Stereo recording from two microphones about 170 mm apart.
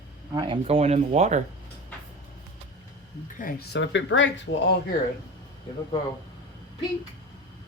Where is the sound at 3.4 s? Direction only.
60° left (ahead or behind); by 4.5 s 90° left.